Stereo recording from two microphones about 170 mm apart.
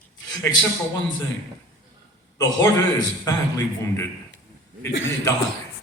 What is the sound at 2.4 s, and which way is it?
A man's voice, 20° left (ahead or behind).